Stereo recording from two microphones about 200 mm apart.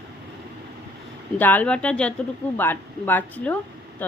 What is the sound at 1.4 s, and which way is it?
A woman's voice, 10° left (ahead or behind).